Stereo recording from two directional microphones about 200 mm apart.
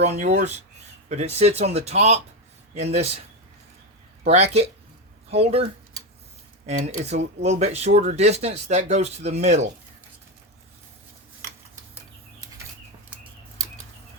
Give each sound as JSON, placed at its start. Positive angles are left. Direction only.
{"t": 0.0, "sound": "speech", "side_deg": -35}
{"t": 5.3, "sound": "speech", "side_deg": -30}
{"t": 6.7, "sound": "speech", "side_deg": -35}